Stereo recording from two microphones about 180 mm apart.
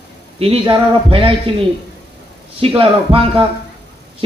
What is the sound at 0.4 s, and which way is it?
Speech, 30° right (ahead or behind).